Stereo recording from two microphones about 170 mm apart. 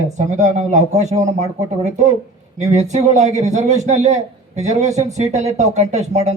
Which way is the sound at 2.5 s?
40° right (ahead or behind).